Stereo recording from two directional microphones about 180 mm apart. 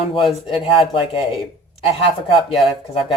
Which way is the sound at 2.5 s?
30° left (ahead or behind).